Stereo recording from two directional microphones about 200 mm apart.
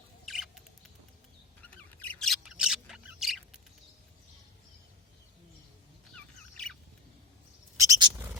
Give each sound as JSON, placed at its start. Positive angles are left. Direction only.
{"t": 0.3, "sound": "rodents", "side_deg": 0}
{"t": 1.7, "sound": "bird", "side_deg": 5}
{"t": 6.1, "sound": "bird", "side_deg": 5}
{"t": 7.8, "sound": "bird", "side_deg": -20}